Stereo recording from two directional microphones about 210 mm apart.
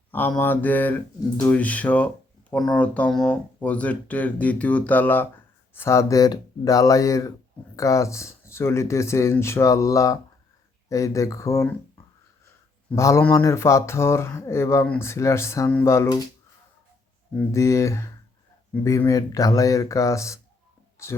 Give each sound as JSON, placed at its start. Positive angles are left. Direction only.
{"t": 0.1, "sound": "speech", "side_deg": 10}
{"t": 12.9, "sound": "speech", "side_deg": 15}
{"t": 17.3, "sound": "speech", "side_deg": 15}